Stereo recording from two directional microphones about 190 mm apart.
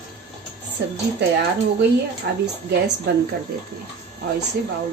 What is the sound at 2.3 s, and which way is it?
Speech, 60° right (ahead or behind).